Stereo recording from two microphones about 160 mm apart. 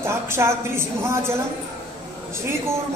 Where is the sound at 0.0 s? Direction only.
15° right (ahead or behind).